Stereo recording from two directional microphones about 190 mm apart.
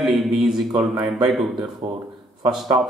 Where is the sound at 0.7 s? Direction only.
20° right (ahead or behind).